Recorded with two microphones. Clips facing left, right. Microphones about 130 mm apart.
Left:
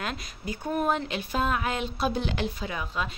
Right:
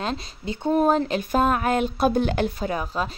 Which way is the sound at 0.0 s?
30° right (ahead or behind).